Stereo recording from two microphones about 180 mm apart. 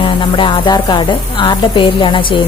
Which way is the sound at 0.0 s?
25° left (ahead or behind).